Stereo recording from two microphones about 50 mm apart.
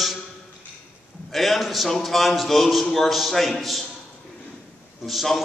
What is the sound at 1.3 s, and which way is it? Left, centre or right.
A man's voice, centre.